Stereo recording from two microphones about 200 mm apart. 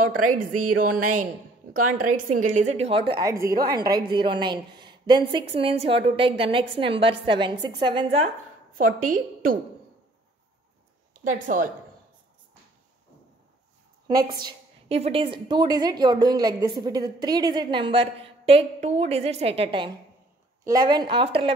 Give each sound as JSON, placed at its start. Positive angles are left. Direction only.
{"t": 0.0, "sound": "a woman's voice", "side_deg": -40}
{"t": 8.7, "sound": "a woman's voice", "side_deg": -45}
{"t": 11.2, "sound": "speech", "side_deg": -40}
{"t": 14.0, "sound": "a woman's voice", "side_deg": -20}